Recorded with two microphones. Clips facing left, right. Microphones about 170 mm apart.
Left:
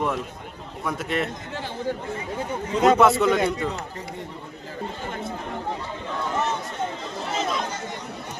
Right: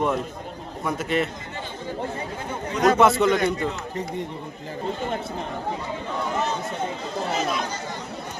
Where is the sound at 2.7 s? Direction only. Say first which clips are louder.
Left 2 dB; 25° left (ahead or behind).